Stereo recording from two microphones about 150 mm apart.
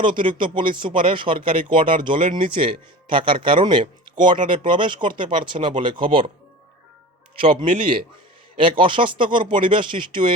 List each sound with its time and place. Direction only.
0.0 s speech: 35° right (ahead or behind)
7.5 s speech: 35° right (ahead or behind)